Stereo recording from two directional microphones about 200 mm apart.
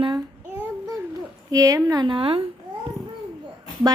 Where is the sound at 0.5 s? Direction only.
10° right (ahead or behind).